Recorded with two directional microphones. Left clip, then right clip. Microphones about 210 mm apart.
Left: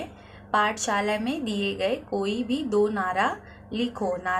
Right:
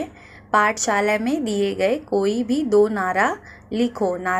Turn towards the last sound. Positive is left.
turn(degrees=-30)  # may be behind; listen again after turning